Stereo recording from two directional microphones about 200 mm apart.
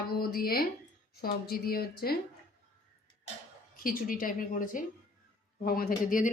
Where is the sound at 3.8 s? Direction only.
45° left (ahead or behind).